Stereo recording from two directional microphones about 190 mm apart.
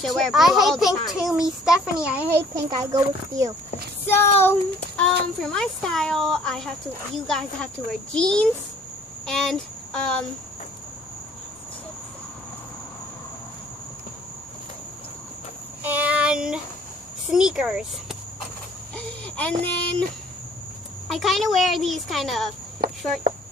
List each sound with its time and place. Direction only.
0.0 s a woman's voice: centre (ahead or behind); by 3.5 s 15° right (ahead or behind)
4.0 s child singing: 10° left (ahead or behind)
4.4 s a sound: 10° left (ahead or behind)
5.4 s a woman's voice: 5° left (ahead or behind)
15.8 s child singing: 10° right (ahead or behind)
17.3 s a woman's voice: 5° right (ahead or behind)
18.9 s a sound: 5° left (ahead or behind)
21.1 s a woman's voice: centre (ahead or behind)
22.8 s a sound: 50° right (ahead or behind)